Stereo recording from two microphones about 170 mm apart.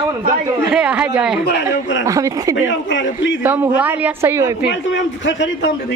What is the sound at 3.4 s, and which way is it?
A woman's voice, 10° right (ahead or behind).